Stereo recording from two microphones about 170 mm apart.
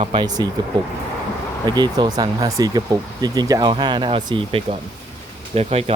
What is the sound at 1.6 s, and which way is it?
Speech, 25° right (ahead or behind).